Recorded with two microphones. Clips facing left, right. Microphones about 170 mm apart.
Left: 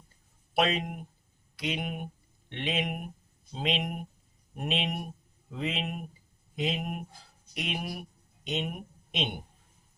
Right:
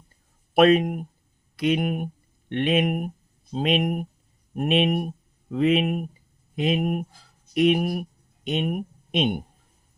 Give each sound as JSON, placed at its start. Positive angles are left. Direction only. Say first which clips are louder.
{"t": 0.5, "sound": "speech", "louder": "right 11 dB", "side_deg": -55}